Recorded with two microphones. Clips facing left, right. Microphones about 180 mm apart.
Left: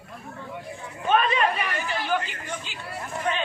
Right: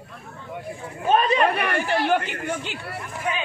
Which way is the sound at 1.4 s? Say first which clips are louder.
Right 4 dB; 60° right (ahead or behind).